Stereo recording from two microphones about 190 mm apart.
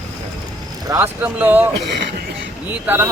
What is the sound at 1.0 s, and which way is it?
Speech, 10° right (ahead or behind).